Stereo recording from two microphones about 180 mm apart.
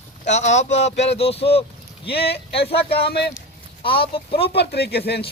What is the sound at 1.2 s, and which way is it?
Speech, 35° left (ahead or behind).